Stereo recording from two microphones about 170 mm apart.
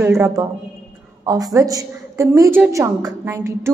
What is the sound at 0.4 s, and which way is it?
A woman's voice, 20° right (ahead or behind).